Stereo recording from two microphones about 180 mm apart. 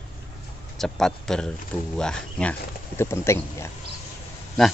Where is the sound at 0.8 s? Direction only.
5° left (ahead or behind).